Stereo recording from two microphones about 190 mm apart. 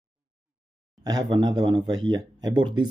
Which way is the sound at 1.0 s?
20° right (ahead or behind).